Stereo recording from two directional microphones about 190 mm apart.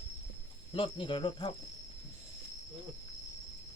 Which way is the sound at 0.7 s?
25° left (ahead or behind).